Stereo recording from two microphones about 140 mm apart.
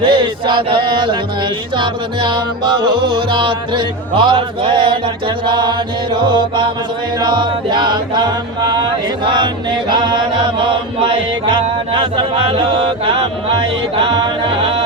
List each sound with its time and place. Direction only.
0.0 s music: 35° right (ahead or behind)